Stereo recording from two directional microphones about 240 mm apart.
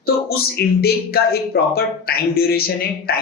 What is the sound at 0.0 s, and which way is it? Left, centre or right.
Speech, left.